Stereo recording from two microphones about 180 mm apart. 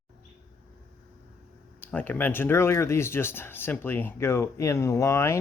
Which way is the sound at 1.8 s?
10° left (ahead or behind).